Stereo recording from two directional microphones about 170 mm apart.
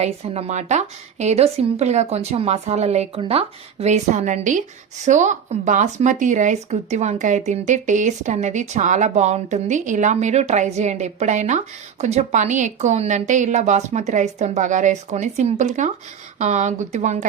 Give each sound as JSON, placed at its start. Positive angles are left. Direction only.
{"t": 0.0, "sound": "a woman's voice", "side_deg": -40}